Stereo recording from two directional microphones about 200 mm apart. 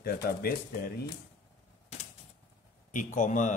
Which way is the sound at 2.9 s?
40° left (ahead or behind).